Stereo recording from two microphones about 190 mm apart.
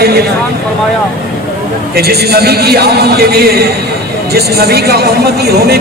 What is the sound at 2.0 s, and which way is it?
A man's voice, 55° right (ahead or behind).